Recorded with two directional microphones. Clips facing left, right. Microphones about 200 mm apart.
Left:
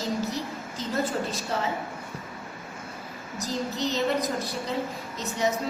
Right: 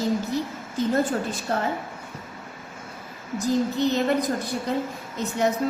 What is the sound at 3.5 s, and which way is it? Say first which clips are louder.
Speech: right 7 dB; 55° right (ahead or behind).